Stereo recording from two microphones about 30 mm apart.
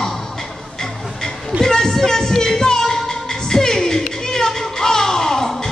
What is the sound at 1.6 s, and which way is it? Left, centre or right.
Music, centre.